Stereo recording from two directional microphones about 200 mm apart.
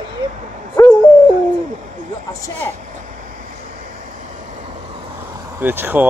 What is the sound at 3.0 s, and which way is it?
Vehicle, 45° right (ahead or behind).